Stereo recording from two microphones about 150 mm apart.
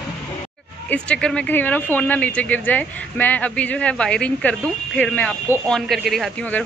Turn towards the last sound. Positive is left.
turn(degrees=0)  # may be behind; listen again after turning